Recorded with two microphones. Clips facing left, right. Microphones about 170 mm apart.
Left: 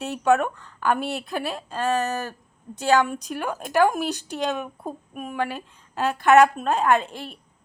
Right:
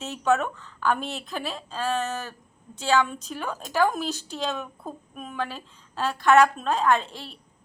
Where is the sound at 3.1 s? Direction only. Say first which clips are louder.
Left 4 dB; 10° left (ahead or behind).